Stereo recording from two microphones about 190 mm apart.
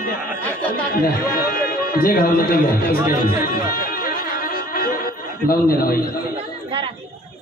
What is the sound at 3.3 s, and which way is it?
Music, 50° left (ahead or behind).